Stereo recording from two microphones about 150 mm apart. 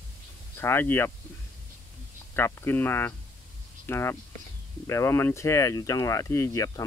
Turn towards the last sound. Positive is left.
turn(degrees=20)  # may be behind; listen again after turning